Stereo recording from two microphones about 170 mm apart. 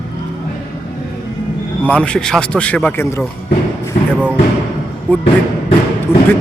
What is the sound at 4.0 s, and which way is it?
Speech, 40° left (ahead or behind).